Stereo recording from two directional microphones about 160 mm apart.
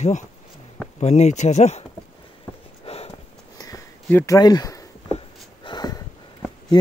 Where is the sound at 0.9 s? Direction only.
45° left (ahead or behind).